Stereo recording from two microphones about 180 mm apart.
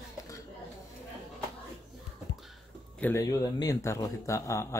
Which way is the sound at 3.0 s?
15° left (ahead or behind).